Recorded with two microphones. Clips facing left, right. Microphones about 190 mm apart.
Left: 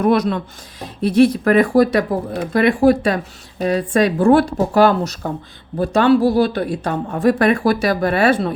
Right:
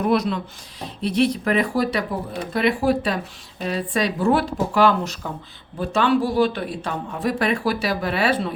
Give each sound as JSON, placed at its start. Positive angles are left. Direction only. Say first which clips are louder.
{"t": 0.0, "sound": "speech", "louder": "left 4 dB", "side_deg": 50}